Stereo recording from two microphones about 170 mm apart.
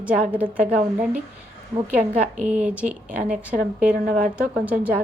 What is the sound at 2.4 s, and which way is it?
A woman's voice, 10° right (ahead or behind).